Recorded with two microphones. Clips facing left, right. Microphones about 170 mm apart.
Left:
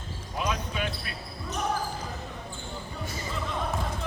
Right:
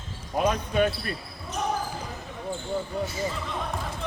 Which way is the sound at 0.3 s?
55° right (ahead or behind).